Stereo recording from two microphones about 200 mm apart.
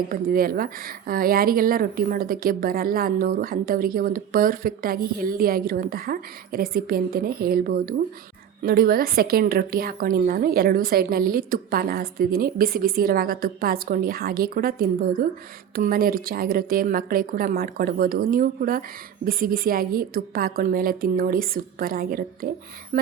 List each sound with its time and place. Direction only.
0.1 s speech: 45° right (ahead or behind)